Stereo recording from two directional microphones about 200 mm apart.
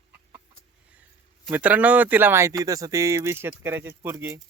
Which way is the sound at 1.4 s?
10° right (ahead or behind).